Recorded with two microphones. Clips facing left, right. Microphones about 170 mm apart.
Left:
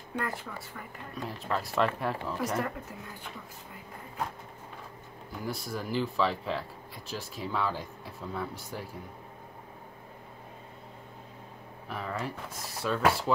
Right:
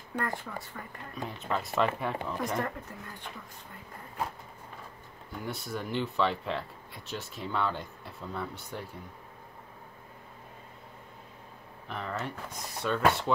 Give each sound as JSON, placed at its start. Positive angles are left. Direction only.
{"t": 0.2, "sound": "speech", "side_deg": 0}
{"t": 5.3, "sound": "speech", "side_deg": 0}
{"t": 11.9, "sound": "speech", "side_deg": 5}